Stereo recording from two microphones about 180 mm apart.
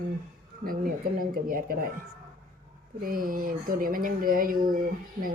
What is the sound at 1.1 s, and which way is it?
Speech, 55° right (ahead or behind).